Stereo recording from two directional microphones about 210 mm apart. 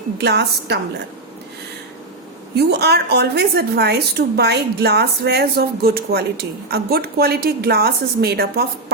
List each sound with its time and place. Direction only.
0.2 s a woman's voice: 50° right (ahead or behind)
2.6 s a woman's voice: 50° right (ahead or behind)